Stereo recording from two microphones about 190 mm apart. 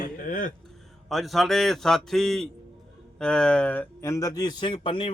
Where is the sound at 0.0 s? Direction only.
45° left (ahead or behind).